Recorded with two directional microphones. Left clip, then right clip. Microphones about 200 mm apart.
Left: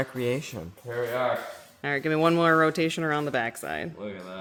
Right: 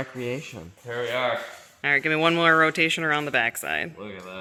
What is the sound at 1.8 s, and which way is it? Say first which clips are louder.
Speech: right 3 dB; 10° left (ahead or behind).